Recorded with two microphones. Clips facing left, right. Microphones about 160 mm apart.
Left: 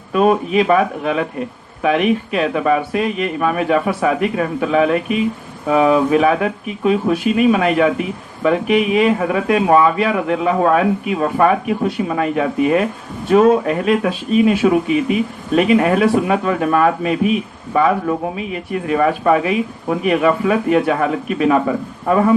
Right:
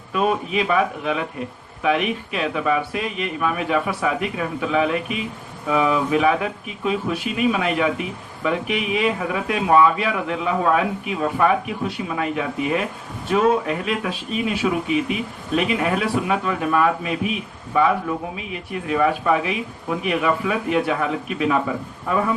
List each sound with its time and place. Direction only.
0.1 s a man's voice: 45° left (ahead or behind)